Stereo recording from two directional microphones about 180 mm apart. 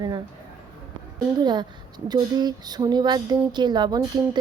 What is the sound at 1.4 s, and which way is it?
Speech, 25° right (ahead or behind).